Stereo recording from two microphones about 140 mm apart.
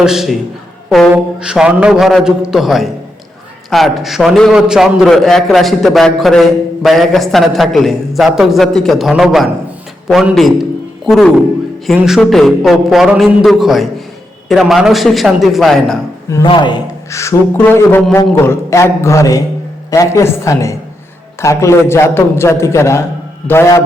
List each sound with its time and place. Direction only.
0.0 s a man's voice: 5° right (ahead or behind)
16.4 s a man's voice: 35° left (ahead or behind)
17.1 s a man's voice: 20° left (ahead or behind)